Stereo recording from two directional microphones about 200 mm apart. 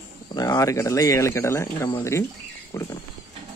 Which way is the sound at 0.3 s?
20° left (ahead or behind).